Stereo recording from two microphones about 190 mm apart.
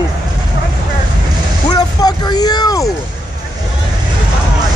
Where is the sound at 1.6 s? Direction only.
20° left (ahead or behind).